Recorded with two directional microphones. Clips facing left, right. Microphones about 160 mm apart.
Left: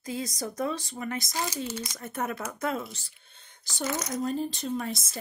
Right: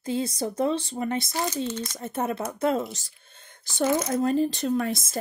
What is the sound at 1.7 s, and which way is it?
Speech, 10° left (ahead or behind).